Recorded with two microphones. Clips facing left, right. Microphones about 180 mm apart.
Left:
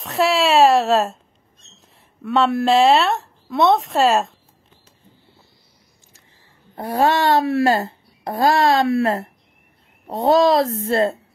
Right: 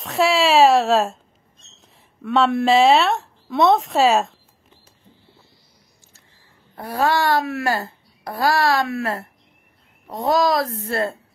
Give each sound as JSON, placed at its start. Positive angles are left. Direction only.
{"t": 0.0, "sound": "speech", "side_deg": 0}
{"t": 6.7, "sound": "a child's voice", "side_deg": 25}